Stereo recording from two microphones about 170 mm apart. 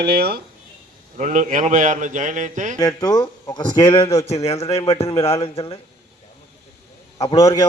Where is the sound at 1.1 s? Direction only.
45° right (ahead or behind).